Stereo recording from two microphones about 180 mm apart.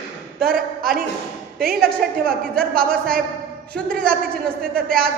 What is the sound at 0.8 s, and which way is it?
Speech, 55° right (ahead or behind).